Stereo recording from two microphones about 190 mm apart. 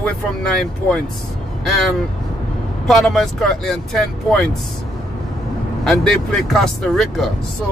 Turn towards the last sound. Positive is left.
turn(degrees=0)  # may be behind; listen again after turning